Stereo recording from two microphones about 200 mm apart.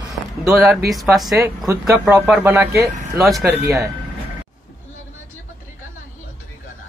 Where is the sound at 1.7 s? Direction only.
15° right (ahead or behind).